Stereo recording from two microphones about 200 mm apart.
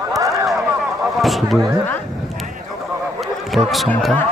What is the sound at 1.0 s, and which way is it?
Speech, centre (ahead or behind).